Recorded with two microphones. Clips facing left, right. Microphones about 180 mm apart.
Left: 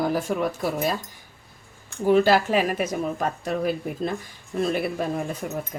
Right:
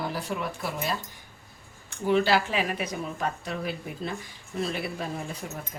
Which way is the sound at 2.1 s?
45° left (ahead or behind).